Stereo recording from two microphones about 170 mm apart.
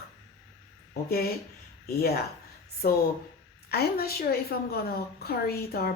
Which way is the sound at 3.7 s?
65° left (ahead or behind).